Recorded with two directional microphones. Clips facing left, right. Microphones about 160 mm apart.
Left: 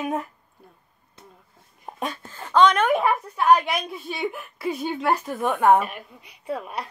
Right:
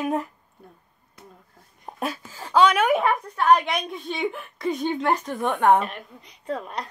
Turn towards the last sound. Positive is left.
turn(degrees=10)  # may be behind; listen again after turning